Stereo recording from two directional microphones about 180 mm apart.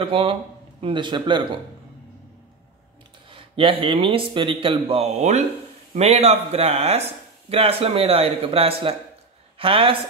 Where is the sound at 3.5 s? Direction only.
30° right (ahead or behind).